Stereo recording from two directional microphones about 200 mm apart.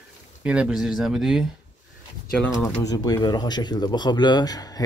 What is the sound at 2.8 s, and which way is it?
Speech, 20° left (ahead or behind).